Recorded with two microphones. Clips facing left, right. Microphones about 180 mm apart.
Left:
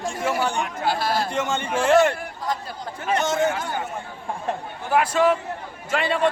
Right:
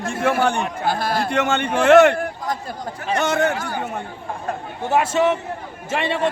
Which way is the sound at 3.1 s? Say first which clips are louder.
Right 2 dB; 65° right (ahead or behind).